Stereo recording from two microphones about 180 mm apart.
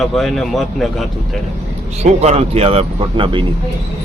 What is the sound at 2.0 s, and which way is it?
Speech, 40° right (ahead or behind).